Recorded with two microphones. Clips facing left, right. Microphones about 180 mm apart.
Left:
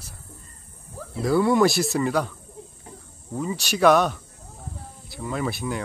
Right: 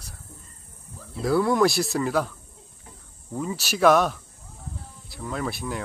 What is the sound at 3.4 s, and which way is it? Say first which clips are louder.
Speech: left 1 dB; centre (ahead or behind).